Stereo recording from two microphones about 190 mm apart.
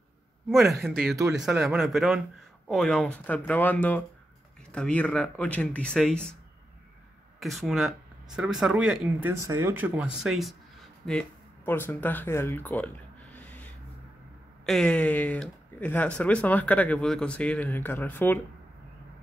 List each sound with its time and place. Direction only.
0.5 s speech: centre (ahead or behind)
1.1 s speech: 15° right (ahead or behind)
1.4 s speech: centre (ahead or behind)
7.3 s speech: centre (ahead or behind)
9.4 s speech: 15° right (ahead or behind); by 18.4 s 10° left (ahead or behind)